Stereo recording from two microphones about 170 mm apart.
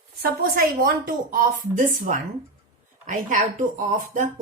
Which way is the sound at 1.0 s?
55° right (ahead or behind).